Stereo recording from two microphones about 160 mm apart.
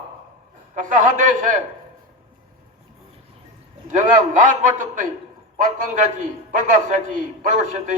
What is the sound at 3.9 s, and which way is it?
A man's voice, 50° right (ahead or behind).